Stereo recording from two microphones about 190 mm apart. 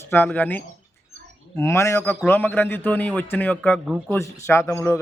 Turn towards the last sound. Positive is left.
turn(degrees=15)  # may be behind; listen again after turning